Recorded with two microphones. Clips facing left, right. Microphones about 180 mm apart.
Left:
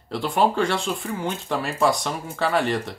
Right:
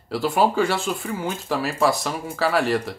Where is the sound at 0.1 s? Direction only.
5° right (ahead or behind).